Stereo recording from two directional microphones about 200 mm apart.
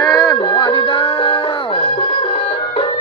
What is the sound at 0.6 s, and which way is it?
Music, 25° left (ahead or behind).